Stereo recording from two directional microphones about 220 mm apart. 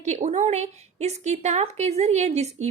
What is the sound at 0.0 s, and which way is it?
A woman's voice, 30° right (ahead or behind).